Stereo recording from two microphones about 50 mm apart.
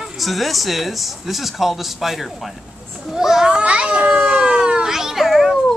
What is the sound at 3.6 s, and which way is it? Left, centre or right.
Children playing, right.